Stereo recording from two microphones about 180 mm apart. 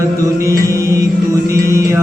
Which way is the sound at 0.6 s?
15° right (ahead or behind).